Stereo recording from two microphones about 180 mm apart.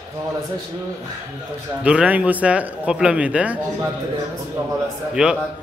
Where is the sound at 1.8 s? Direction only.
5° right (ahead or behind).